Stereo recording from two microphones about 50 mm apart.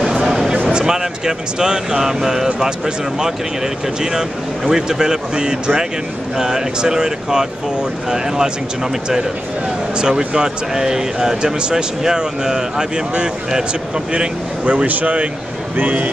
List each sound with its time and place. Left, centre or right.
0.3 s a sound: centre
0.7 s speech: centre
4.6 s speech: centre
9.9 s speech: centre
14.6 s a man's voice: right